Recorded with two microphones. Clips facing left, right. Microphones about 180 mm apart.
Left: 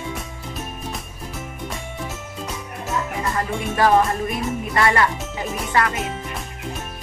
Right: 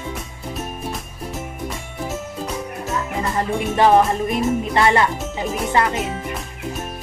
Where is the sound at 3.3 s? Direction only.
25° right (ahead or behind).